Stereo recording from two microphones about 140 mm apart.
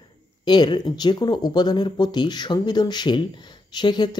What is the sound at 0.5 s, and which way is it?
Speech, 30° left (ahead or behind).